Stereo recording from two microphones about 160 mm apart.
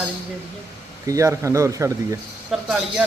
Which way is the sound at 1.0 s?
20° right (ahead or behind).